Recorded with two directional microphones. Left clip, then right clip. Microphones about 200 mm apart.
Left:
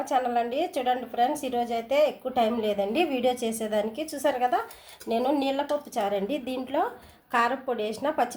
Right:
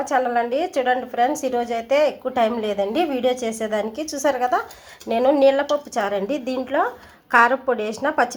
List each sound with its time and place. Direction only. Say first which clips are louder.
0.0 s a woman's voice: right 5 dB; 15° right (ahead or behind)